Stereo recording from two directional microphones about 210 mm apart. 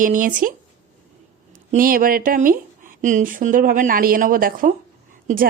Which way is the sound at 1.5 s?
40° right (ahead or behind).